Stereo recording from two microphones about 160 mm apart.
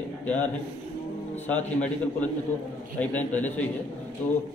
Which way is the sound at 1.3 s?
10° left (ahead or behind).